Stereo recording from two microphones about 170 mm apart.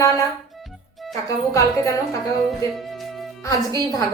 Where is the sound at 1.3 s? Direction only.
20° left (ahead or behind).